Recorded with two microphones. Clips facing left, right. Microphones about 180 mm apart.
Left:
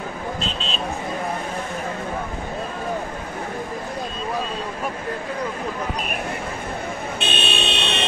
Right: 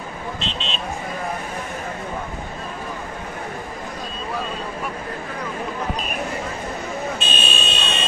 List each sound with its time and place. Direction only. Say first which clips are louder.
0.4 s speech: left 1 dB; 40° left (ahead or behind)
7.2 s vehicle: left 2 dB; 60° left (ahead or behind)